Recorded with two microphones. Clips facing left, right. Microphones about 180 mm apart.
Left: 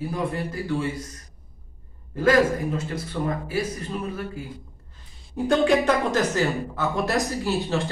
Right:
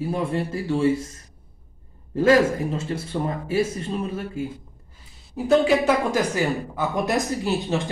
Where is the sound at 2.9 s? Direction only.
25° right (ahead or behind).